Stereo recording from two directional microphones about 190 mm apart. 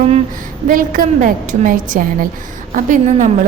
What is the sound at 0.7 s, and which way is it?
A woman's voice, 45° right (ahead or behind).